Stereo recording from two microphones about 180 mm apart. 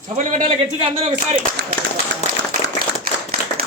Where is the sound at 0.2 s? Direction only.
45° right (ahead or behind).